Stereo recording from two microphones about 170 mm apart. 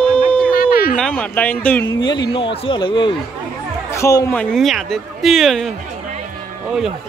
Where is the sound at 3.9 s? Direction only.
20° left (ahead or behind).